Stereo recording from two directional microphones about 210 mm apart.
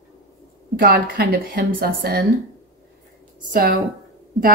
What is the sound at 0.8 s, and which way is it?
Speech, 45° right (ahead or behind).